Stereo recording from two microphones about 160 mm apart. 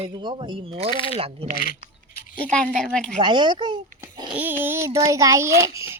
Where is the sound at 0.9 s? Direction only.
35° left (ahead or behind).